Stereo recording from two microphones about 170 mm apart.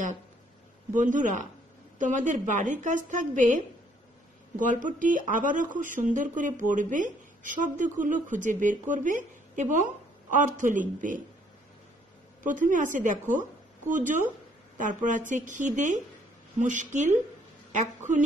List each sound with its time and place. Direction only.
0.9 s speech: 45° right (ahead or behind)
12.4 s speech: 50° right (ahead or behind)